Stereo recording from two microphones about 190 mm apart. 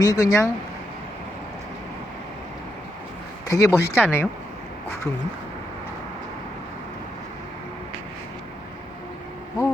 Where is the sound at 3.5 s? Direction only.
15° left (ahead or behind).